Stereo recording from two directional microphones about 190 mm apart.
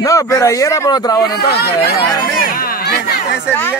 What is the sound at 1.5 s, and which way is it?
Speech, 55° left (ahead or behind).